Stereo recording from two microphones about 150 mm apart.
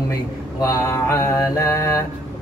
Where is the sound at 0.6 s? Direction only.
20° left (ahead or behind).